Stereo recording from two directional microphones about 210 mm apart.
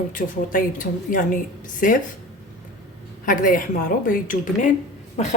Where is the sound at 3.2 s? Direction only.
40° left (ahead or behind).